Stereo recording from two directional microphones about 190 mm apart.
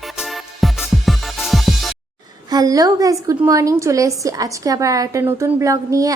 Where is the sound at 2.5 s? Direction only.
20° right (ahead or behind).